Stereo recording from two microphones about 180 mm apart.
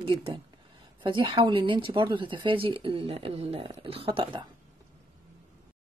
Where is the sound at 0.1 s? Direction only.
30° right (ahead or behind).